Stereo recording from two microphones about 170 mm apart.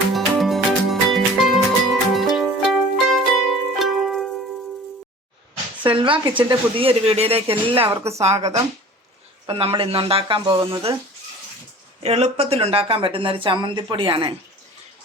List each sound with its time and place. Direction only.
0.1 s music: centre (ahead or behind)
5.8 s speech: 30° right (ahead or behind)
7.9 s speech: 15° right (ahead or behind)
8.2 s speech: 40° right (ahead or behind)
9.5 s speech: 30° right (ahead or behind)
11.9 s speech: 40° right (ahead or behind)